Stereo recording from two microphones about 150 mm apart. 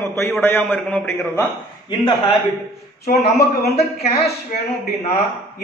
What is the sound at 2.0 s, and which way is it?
Speech, 30° left (ahead or behind).